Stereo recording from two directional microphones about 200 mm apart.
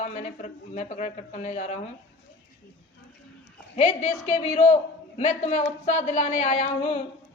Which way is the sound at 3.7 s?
35° left (ahead or behind).